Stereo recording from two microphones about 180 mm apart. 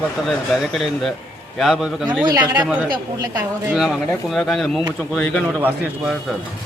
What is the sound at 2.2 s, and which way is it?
Speech, 20° right (ahead or behind).